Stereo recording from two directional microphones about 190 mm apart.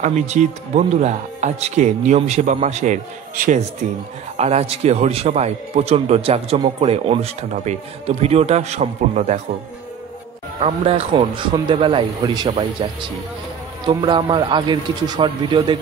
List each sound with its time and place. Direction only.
0.0 s a man's voice: 40° right (ahead or behind)
10.6 s a man's voice: 30° right (ahead or behind)
13.8 s a man's voice: 25° right (ahead or behind)